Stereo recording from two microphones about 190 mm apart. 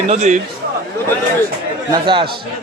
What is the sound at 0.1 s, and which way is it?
Speech, 40° right (ahead or behind).